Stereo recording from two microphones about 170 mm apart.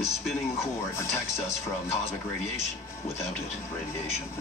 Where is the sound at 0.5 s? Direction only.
15° left (ahead or behind).